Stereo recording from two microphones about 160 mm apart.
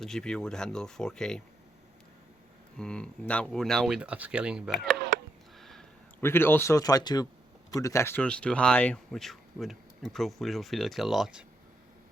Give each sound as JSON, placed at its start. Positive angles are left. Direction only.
{"t": 0.0, "sound": "speech", "side_deg": 5}
{"t": 2.7, "sound": "speech", "side_deg": 5}
{"t": 5.5, "sound": "a sound", "side_deg": 0}
{"t": 6.2, "sound": "speech", "side_deg": 15}